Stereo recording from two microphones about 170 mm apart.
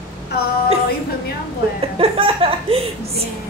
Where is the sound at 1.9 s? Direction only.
35° right (ahead or behind).